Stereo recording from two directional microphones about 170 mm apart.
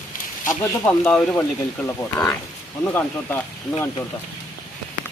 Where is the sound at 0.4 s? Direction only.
15° left (ahead or behind).